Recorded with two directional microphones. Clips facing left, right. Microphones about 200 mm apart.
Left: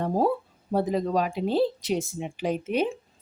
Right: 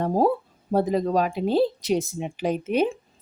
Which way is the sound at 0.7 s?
40° right (ahead or behind).